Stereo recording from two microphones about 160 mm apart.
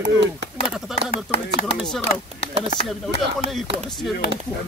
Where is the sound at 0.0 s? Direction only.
90° right.